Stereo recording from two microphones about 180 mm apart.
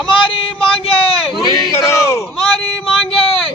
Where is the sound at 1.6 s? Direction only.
15° left (ahead or behind).